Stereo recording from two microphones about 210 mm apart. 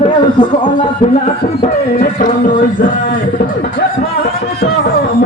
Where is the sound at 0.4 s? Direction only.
20° left (ahead or behind).